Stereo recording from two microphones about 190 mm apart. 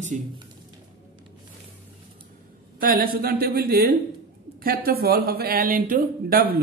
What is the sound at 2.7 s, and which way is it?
Speech, 50° right (ahead or behind).